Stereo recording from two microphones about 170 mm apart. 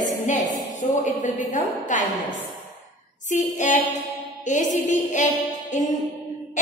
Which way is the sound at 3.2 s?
45° left (ahead or behind).